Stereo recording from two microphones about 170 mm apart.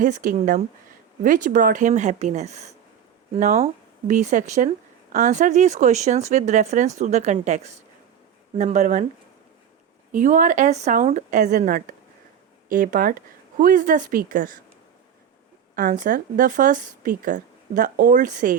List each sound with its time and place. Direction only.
0.0 s speech: 50° right (ahead or behind)
3.3 s speech: 55° right (ahead or behind)
10.1 s speech: 50° right (ahead or behind)
15.7 s speech: 50° right (ahead or behind)